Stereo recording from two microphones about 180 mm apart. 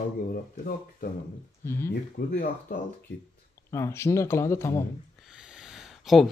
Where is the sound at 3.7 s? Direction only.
15° left (ahead or behind).